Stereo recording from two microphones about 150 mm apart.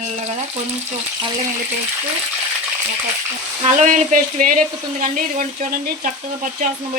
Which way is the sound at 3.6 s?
55° right (ahead or behind).